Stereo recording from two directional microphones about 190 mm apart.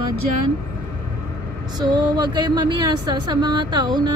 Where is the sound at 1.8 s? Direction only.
20° right (ahead or behind).